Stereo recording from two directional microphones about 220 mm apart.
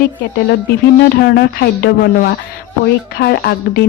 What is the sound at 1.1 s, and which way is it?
A woman's voice, 50° left (ahead or behind).